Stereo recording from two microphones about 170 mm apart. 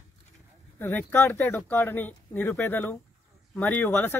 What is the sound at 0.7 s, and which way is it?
Speech, 10° left (ahead or behind).